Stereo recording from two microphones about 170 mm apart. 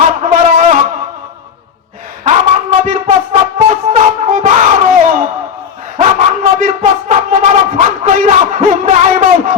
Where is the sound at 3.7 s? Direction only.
45° right (ahead or behind).